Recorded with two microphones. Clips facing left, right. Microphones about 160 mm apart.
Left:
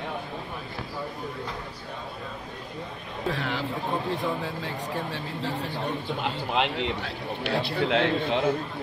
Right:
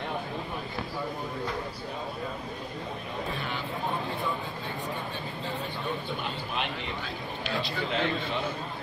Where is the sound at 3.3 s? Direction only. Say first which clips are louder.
Left 4 dB; 90° left.